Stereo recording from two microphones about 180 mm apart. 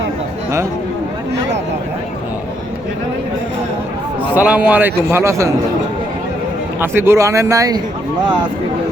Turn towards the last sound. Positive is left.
turn(degrees=-20)  # may be behind; listen again after turning